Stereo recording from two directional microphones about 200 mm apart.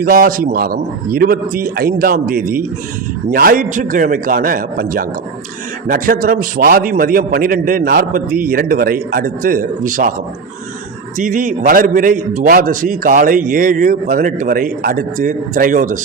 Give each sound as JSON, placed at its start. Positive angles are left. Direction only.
{"t": 0.0, "sound": "a man's voice", "side_deg": -45}
{"t": 11.2, "sound": "a man's voice", "side_deg": -40}